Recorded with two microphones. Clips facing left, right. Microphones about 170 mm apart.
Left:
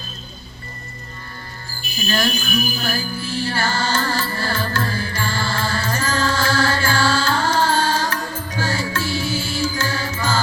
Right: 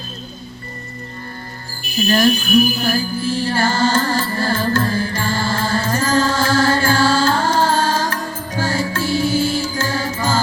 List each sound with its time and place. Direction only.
2.0 s speech: 40° right (ahead or behind)
2.9 s music: 45° right (ahead or behind)